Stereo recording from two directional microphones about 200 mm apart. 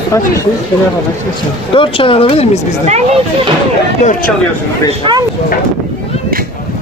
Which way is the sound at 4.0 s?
40° left (ahead or behind).